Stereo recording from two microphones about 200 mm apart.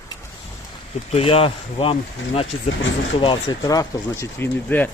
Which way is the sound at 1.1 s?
30° left (ahead or behind).